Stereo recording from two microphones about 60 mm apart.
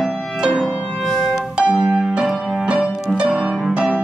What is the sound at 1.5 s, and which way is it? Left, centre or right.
Piano, centre.